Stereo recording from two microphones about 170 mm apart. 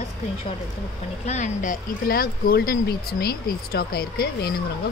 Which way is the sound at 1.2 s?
45° left (ahead or behind).